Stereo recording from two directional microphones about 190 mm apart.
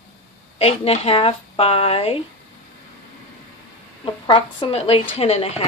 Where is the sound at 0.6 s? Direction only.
30° left (ahead or behind).